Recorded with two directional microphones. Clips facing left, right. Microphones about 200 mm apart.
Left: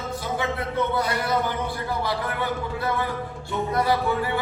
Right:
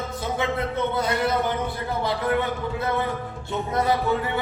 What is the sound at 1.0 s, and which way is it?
Speech, 20° right (ahead or behind).